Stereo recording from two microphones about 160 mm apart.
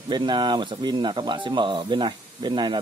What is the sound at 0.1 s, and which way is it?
Speech, 30° right (ahead or behind).